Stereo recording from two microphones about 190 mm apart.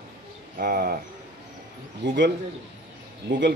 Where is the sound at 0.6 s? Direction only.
50° right (ahead or behind).